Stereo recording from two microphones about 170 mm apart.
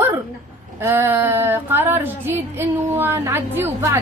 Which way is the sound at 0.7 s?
15° right (ahead or behind).